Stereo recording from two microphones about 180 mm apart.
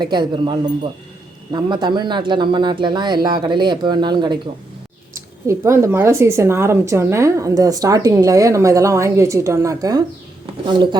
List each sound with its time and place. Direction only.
0.0 s speech: 25° right (ahead or behind)
5.5 s speech: 15° right (ahead or behind)